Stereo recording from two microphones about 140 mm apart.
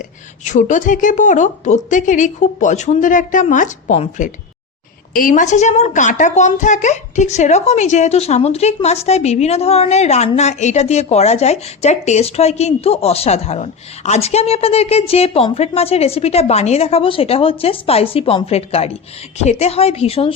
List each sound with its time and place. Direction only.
0.4 s a woman's voice: 60° left (ahead or behind)
5.1 s a woman's voice: 70° left (ahead or behind); by 20.3 s 45° left (ahead or behind)